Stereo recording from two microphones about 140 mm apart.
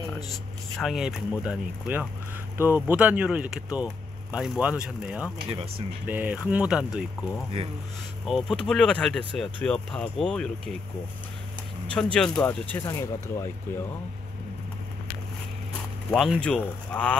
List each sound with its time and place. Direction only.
0.7 s speech: 5° right (ahead or behind)
11.9 s speech: 5° left (ahead or behind)
16.4 s speech: 5° left (ahead or behind)